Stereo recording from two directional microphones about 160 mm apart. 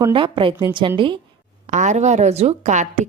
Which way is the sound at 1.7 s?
50° right (ahead or behind).